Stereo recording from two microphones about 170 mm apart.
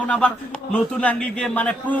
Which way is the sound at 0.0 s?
5° left (ahead or behind).